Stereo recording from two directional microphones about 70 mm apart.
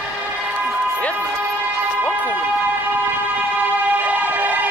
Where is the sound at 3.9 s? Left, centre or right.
Right.